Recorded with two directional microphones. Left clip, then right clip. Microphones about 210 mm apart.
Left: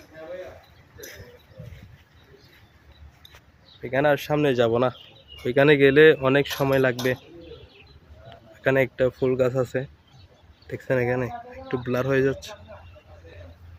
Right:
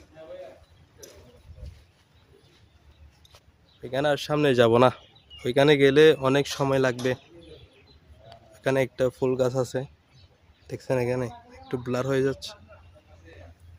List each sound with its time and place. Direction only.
3.3 s a sound: 15° right (ahead or behind)
4.3 s speech: 35° right (ahead or behind)
4.5 s speech: 55° right (ahead or behind)
5.4 s speech: 30° right (ahead or behind)
8.3 s speech: 20° right (ahead or behind)
10.7 s speech: 20° right (ahead or behind)